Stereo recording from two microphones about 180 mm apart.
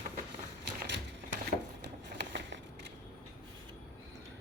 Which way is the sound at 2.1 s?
80° right.